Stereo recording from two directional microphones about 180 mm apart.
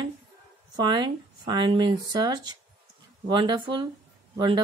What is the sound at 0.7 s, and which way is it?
Speech, 25° right (ahead or behind).